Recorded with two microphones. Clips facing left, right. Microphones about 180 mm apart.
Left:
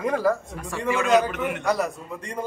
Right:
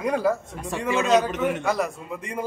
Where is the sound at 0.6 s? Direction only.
20° right (ahead or behind).